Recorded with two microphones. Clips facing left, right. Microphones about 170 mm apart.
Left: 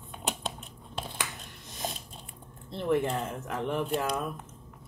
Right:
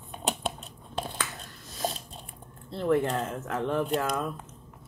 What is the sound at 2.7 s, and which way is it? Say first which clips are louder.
Speech: right 2 dB; 20° left (ahead or behind).